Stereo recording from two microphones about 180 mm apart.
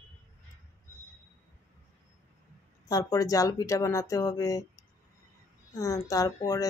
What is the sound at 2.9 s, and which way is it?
Speech, 20° left (ahead or behind).